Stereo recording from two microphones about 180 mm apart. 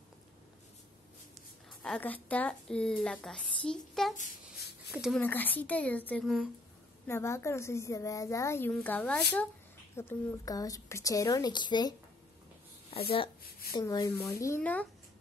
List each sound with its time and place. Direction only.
1.7 s a woman's voice: 5° left (ahead or behind)
5.2 s a woman's voice: 10° left (ahead or behind)
7.1 s a woman's voice: 15° left (ahead or behind)
13.5 s a sound: 55° left (ahead or behind)
13.7 s a woman's voice: 20° left (ahead or behind)